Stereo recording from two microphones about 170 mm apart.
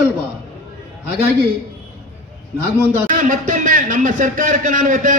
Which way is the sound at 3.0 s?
50° right (ahead or behind).